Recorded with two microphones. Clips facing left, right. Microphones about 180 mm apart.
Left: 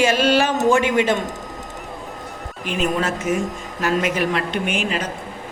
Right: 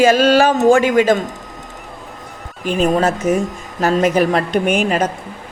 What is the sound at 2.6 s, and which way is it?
A woman's voice, 40° right (ahead or behind).